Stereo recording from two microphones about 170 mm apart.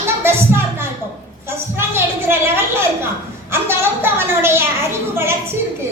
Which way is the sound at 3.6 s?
15° right (ahead or behind).